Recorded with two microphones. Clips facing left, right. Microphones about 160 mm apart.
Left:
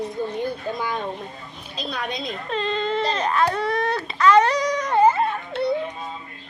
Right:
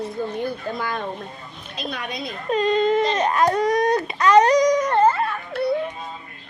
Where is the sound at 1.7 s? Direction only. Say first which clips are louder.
Left 1 dB; 30° left (ahead or behind).